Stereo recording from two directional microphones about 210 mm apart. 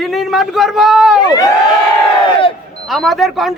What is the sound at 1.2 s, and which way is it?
Speech, 20° left (ahead or behind).